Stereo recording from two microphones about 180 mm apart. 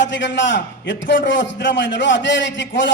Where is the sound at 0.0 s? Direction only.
90° left.